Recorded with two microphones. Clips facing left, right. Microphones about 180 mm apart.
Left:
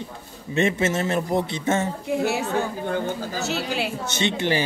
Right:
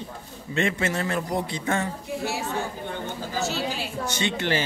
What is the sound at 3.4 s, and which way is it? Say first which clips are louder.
Speech: left 1 dB; 65° left (ahead or behind).